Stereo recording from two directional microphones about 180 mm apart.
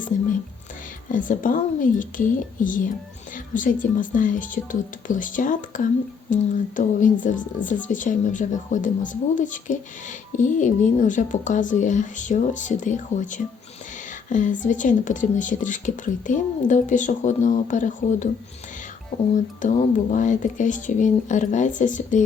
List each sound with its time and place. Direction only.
1.1 s speech: 45° left (ahead or behind)
19.3 s speech: 45° left (ahead or behind)